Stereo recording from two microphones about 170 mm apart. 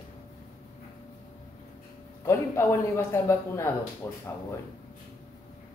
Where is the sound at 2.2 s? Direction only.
15° left (ahead or behind).